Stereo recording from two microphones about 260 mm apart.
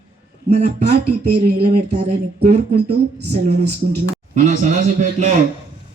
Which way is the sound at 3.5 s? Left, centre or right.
Right.